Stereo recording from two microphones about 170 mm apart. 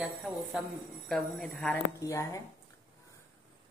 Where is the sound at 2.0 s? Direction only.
20° left (ahead or behind).